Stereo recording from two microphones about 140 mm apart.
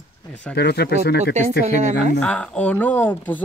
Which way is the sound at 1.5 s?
90° left.